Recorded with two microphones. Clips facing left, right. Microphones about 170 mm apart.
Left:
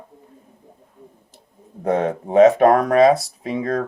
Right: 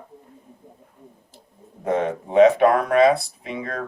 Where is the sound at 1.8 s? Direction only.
40° left (ahead or behind).